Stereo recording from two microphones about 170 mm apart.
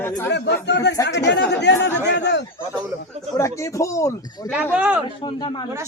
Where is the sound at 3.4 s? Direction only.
15° left (ahead or behind).